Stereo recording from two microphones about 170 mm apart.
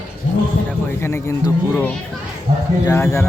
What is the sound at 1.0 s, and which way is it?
Speech, 15° left (ahead or behind).